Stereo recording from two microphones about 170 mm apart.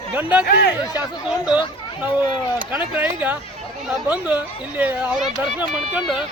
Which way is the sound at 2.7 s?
10° right (ahead or behind).